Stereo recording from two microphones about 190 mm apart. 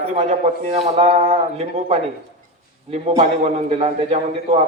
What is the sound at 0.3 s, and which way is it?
A man's voice, 35° right (ahead or behind).